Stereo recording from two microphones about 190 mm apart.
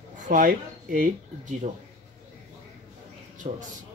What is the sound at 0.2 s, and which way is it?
Speech, 45° right (ahead or behind).